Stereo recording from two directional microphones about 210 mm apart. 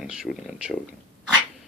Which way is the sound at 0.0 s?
5° right (ahead or behind).